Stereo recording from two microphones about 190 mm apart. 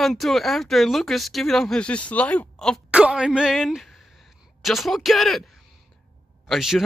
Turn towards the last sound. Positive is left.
turn(degrees=0)  # may be behind; listen again after turning